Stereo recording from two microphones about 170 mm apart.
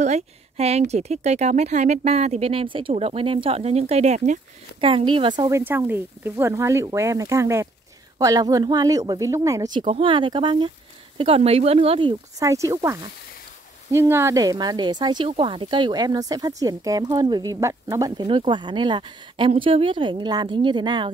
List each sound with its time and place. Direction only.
0.0 s speech: 40° right (ahead or behind)
5.6 s speech: 10° right (ahead or behind); by 12.4 s 30° right (ahead or behind)
12.4 s speech: 20° right (ahead or behind)